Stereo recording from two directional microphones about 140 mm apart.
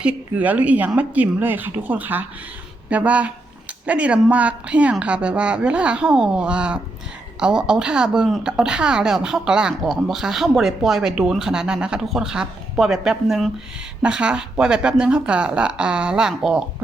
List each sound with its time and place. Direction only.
0.0 s a woman's voice: 10° right (ahead or behind)